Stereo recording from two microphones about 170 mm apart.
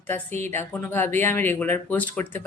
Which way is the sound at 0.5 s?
10° left (ahead or behind).